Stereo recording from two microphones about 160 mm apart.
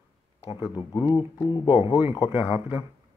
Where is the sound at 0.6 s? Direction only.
25° left (ahead or behind).